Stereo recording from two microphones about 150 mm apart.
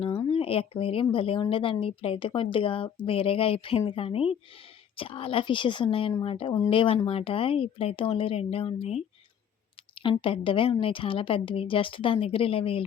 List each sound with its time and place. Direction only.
0.3 s speech: 40° left (ahead or behind)